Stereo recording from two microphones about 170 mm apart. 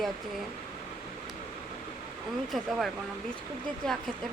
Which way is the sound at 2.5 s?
Centre (ahead or behind).